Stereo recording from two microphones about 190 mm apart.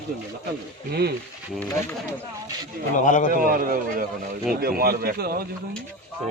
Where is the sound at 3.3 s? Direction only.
45° right (ahead or behind).